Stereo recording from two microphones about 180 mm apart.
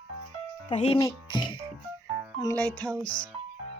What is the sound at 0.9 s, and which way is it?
Speech, 25° left (ahead or behind).